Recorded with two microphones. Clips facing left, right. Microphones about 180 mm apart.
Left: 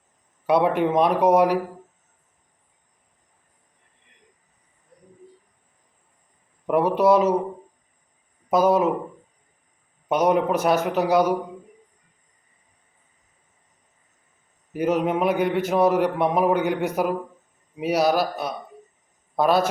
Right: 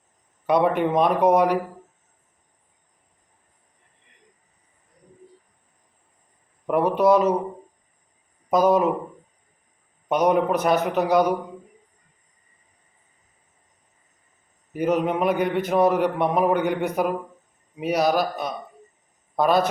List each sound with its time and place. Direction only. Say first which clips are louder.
0.4 s speech: even; 5° left (ahead or behind)
6.7 s speech: even; 5° left (ahead or behind)
8.4 s speech: even; 5° left (ahead or behind)
10.1 s a man's voice: even; 5° left (ahead or behind)
14.7 s speech: even; 5° left (ahead or behind)